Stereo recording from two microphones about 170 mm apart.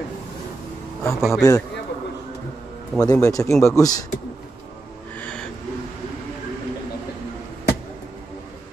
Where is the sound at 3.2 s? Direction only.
20° left (ahead or behind).